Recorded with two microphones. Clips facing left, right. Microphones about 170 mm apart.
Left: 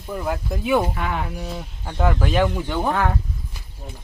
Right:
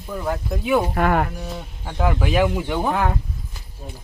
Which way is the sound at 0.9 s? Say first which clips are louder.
Right 7 dB; 55° right (ahead or behind).